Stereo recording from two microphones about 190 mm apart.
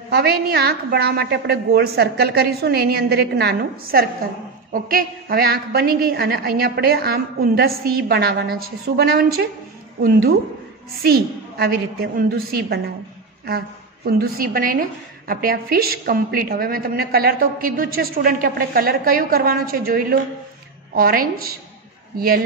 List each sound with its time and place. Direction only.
0.1 s a woman's voice: 60° right (ahead or behind)
11.0 s a woman's voice: 55° right (ahead or behind)